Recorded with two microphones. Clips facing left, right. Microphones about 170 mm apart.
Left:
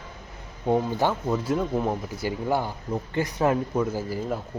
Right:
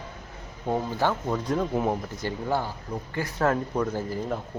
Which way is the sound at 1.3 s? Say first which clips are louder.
Left 1 dB; 5° left (ahead or behind).